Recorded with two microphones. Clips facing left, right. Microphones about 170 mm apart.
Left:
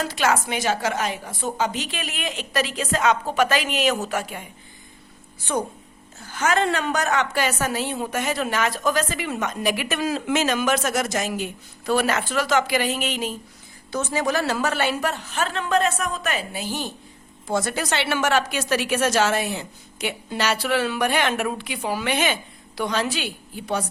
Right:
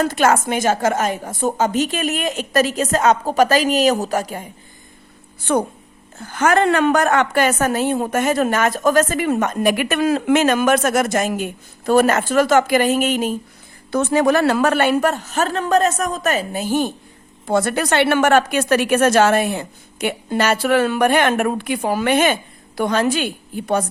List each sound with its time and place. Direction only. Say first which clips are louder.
0.0 s a woman's voice: right 6 dB; 50° right (ahead or behind)
5.4 s a woman's voice: right 7 dB; 60° right (ahead or behind)
13.9 s a woman's voice: right 8 dB; 60° right (ahead or behind)